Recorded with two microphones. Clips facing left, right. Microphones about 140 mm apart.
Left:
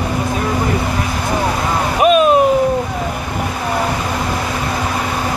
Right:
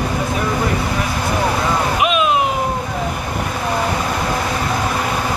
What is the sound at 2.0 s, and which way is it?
Vehicle, 40° left (ahead or behind).